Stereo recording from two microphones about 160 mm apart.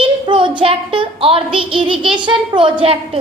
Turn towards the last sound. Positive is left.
turn(degrees=-35)  # may be behind; listen again after turning